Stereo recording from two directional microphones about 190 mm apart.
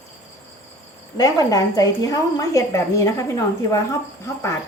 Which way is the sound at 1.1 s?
20° left (ahead or behind).